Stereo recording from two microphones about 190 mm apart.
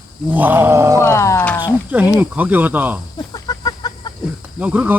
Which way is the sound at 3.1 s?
20° left (ahead or behind).